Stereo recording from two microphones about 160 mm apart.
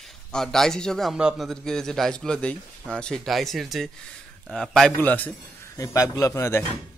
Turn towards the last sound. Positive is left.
turn(degrees=15)  # may be behind; listen again after turning